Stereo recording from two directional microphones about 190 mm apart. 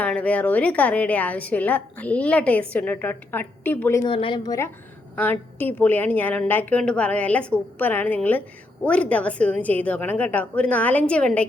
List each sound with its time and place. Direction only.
0.0 s a woman's voice: 5° left (ahead or behind)
4.0 s a woman's voice: 25° left (ahead or behind); by 11.4 s 5° left (ahead or behind)